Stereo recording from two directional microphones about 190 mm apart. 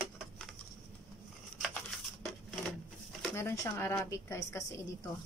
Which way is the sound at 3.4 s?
10° left (ahead or behind).